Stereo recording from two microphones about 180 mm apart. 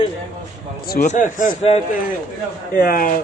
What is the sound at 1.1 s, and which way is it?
Speech, 45° left (ahead or behind).